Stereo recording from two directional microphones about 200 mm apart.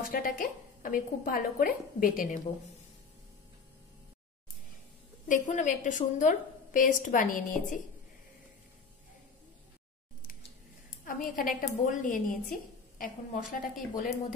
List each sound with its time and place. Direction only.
0.0 s a woman's voice: 45° left (ahead or behind)
5.3 s a woman's voice: 40° left (ahead or behind)
11.1 s a woman's voice: 45° left (ahead or behind)